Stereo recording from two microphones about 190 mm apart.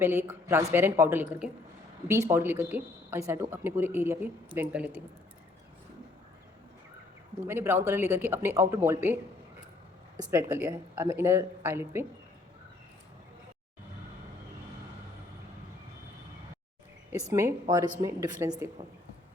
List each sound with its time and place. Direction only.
0.0 s a woman's voice: 10° right (ahead or behind)
7.3 s a woman's voice: 10° right (ahead or behind)
10.2 s a woman's voice: 10° right (ahead or behind)
17.3 s a woman's voice: 15° right (ahead or behind)